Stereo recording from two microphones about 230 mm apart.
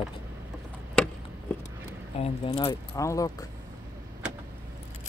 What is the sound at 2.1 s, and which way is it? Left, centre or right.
Speech, left.